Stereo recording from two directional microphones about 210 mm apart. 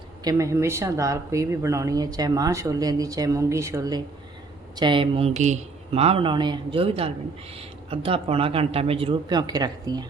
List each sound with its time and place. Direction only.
0.3 s speech: 15° right (ahead or behind)